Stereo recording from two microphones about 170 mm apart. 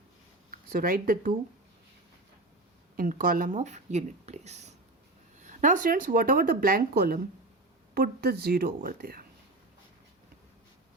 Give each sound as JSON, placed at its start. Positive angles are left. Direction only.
{"t": 0.7, "sound": "speech", "side_deg": -55}
{"t": 2.9, "sound": "speech", "side_deg": -55}